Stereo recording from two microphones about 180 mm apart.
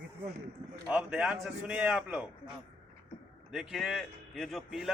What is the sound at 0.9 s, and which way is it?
A man's voice, 5° right (ahead or behind).